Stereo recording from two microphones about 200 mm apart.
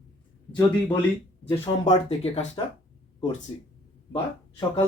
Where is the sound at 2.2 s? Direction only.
30° left (ahead or behind).